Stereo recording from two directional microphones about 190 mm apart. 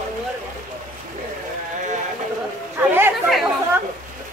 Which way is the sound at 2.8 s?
10° right (ahead or behind).